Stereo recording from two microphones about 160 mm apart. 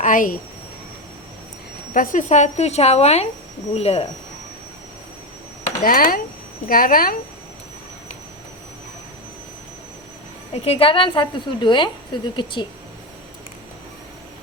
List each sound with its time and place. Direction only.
0.0 s a woman's voice: 55° left (ahead or behind)
1.9 s a woman's voice: 55° left (ahead or behind); by 4.1 s 40° left (ahead or behind)
5.8 s a woman's voice: 65° left (ahead or behind)
10.5 s a woman's voice: 40° left (ahead or behind)